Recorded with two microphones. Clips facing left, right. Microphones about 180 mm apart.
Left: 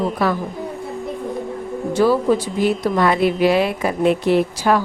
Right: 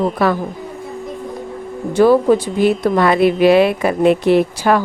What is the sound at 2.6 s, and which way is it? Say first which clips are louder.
A woman's voice: right 3 dB; 65° right (ahead or behind).